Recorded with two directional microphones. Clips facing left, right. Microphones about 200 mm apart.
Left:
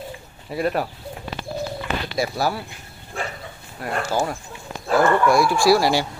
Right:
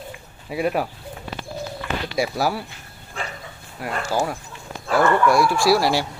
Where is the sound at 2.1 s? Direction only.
5° right (ahead or behind).